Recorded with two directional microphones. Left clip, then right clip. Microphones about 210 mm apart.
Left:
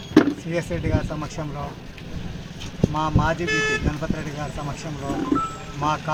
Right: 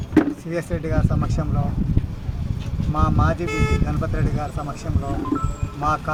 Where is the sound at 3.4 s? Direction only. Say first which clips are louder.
Left 3 dB; 55° right (ahead or behind).